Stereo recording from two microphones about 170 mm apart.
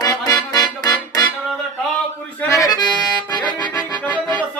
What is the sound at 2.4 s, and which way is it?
Accordion, 20° left (ahead or behind).